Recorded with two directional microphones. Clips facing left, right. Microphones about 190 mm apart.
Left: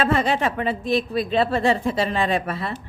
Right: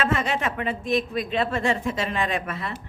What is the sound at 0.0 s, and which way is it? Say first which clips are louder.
A woman's voice: left 4 dB; 35° left (ahead or behind).